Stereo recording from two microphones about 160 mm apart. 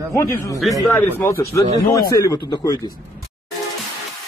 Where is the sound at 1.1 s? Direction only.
15° left (ahead or behind).